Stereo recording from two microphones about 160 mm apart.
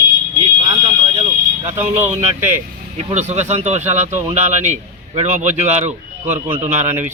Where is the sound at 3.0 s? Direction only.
45° right (ahead or behind).